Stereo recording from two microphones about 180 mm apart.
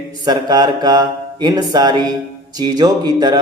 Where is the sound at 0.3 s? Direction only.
25° right (ahead or behind).